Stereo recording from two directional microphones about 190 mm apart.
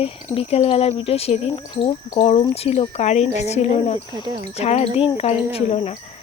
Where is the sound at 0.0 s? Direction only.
30° left (ahead or behind).